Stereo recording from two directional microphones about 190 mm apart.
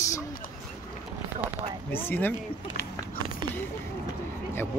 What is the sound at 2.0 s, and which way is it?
Speech, 10° left (ahead or behind).